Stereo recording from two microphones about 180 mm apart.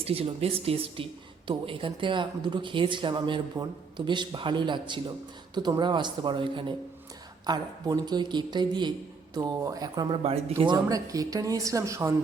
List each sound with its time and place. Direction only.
0.0 s speech: 30° right (ahead or behind); by 12.1 s 15° right (ahead or behind)